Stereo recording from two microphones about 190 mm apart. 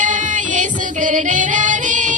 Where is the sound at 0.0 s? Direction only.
40° right (ahead or behind).